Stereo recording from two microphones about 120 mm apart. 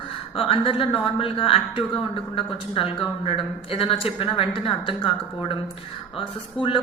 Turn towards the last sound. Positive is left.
turn(degrees=45)  # may be behind; listen again after turning